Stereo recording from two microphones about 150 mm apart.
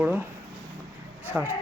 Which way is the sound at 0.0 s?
10° right (ahead or behind).